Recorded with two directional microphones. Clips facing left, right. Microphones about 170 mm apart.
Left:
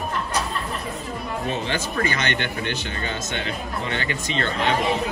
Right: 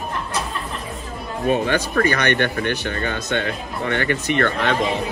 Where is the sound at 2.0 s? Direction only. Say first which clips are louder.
Right 7 dB; 20° left (ahead or behind).